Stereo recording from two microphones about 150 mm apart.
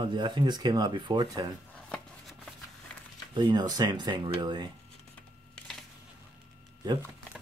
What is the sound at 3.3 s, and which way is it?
Speech, 30° right (ahead or behind).